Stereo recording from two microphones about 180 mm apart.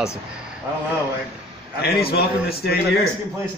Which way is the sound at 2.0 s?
60° left (ahead or behind).